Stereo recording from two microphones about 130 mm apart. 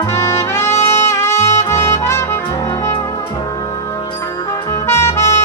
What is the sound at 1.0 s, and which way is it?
Brass instrument, 20° left (ahead or behind).